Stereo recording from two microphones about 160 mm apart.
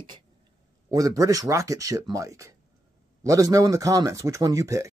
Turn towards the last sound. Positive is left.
turn(degrees=-20)  # may be behind; listen again after turning